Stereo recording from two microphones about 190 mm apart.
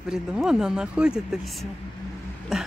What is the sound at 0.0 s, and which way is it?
Speech, 5° right (ahead or behind).